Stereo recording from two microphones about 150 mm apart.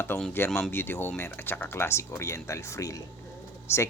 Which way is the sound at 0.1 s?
15° left (ahead or behind).